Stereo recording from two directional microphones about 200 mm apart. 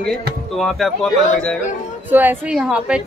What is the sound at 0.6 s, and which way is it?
Speech, centre (ahead or behind).